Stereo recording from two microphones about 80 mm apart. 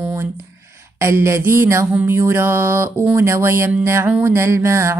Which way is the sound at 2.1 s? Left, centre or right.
Right.